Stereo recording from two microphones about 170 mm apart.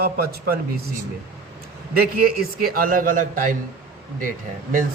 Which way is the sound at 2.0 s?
60° right (ahead or behind).